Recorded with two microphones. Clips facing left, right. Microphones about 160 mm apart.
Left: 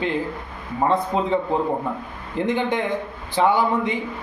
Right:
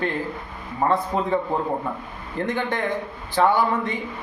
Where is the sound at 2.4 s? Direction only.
15° left (ahead or behind).